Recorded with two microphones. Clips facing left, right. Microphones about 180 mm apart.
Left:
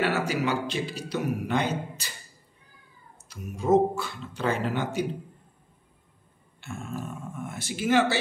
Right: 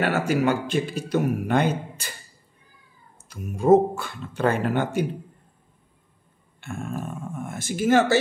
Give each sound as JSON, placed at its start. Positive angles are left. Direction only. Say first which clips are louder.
{"t": 0.0, "sound": "speech", "louder": "right 4 dB", "side_deg": -50}
{"t": 3.3, "sound": "speech", "louder": "right 7 dB", "side_deg": -50}
{"t": 6.6, "sound": "speech", "louder": "right 4 dB", "side_deg": -55}